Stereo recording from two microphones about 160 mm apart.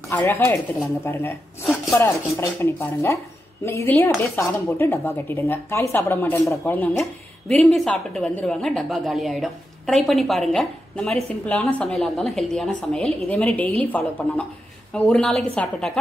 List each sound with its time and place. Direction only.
0.1 s a woman's voice: 15° left (ahead or behind)